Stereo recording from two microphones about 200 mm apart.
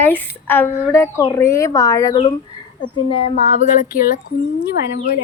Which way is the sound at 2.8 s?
30° left (ahead or behind).